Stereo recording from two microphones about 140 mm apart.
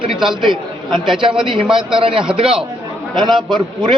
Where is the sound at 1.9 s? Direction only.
40° right (ahead or behind).